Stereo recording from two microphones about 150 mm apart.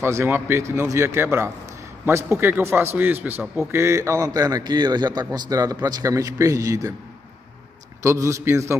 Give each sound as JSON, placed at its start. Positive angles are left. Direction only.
{"t": 0.0, "sound": "a man's voice", "side_deg": -15}
{"t": 8.0, "sound": "a man's voice", "side_deg": -20}